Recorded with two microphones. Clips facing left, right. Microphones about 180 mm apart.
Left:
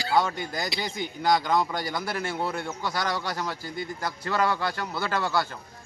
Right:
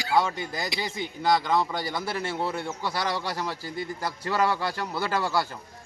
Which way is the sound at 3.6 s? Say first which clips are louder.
Right 1 dB; 35° right (ahead or behind).